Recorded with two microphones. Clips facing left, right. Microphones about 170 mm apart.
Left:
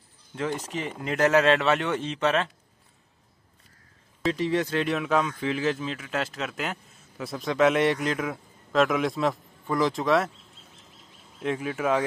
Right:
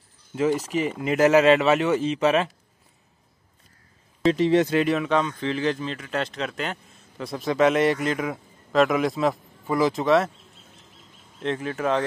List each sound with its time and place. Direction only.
0.4 s speech: 5° right (ahead or behind)
4.3 s speech: 25° right (ahead or behind)
4.7 s speech: centre (ahead or behind)
11.3 s speech: 5° left (ahead or behind)